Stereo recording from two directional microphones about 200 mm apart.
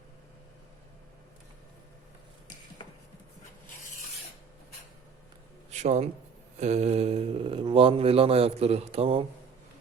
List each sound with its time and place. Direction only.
5.7 s a man's voice: 35° right (ahead or behind)